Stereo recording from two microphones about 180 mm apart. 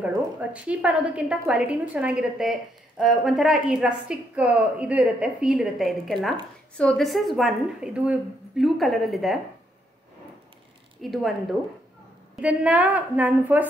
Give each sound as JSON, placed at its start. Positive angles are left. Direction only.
{"t": 0.0, "sound": "a woman's voice", "side_deg": -5}
{"t": 11.0, "sound": "a woman's voice", "side_deg": 0}
{"t": 12.4, "sound": "a woman's voice", "side_deg": -10}